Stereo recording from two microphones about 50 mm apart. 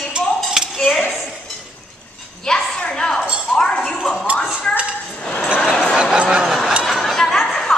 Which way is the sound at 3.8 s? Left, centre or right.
Centre.